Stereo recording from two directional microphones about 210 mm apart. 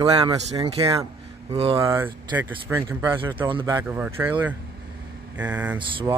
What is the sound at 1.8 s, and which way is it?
Speech, 15° right (ahead or behind).